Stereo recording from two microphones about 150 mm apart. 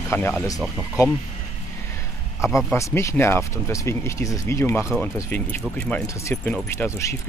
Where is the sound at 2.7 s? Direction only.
20° left (ahead or behind).